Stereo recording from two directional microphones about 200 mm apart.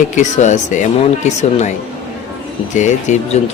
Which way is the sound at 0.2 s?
35° left (ahead or behind).